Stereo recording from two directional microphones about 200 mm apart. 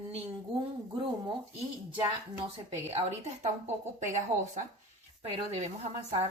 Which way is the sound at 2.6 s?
35° right (ahead or behind).